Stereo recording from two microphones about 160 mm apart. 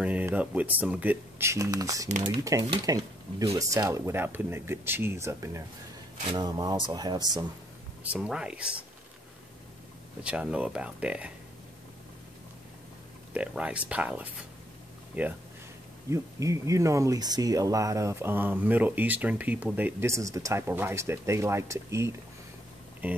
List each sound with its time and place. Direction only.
0.0 s speech: 10° right (ahead or behind); by 7.4 s 25° right (ahead or behind)
8.0 s speech: 10° right (ahead or behind)
10.2 s speech: 5° right (ahead or behind)
13.3 s speech: 5° right (ahead or behind)